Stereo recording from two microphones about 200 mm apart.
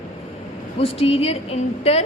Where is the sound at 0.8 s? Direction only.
30° left (ahead or behind).